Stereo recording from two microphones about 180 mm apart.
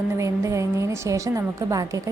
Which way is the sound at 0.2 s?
15° right (ahead or behind).